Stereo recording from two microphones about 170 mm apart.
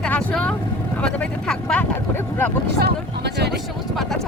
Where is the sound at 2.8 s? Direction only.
75° right (ahead or behind).